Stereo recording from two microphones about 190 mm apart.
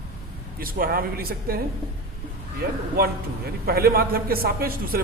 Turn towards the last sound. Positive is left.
turn(degrees=-50)  # may be behind; listen again after turning